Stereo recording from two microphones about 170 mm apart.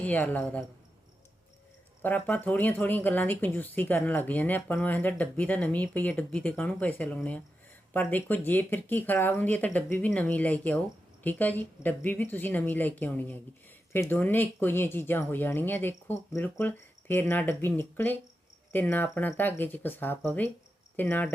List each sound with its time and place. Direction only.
0.0 s speech: 10° left (ahead or behind)
2.0 s speech: 10° left (ahead or behind)